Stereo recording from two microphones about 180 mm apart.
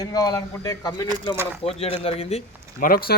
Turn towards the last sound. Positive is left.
turn(degrees=55)  # may be behind; listen again after turning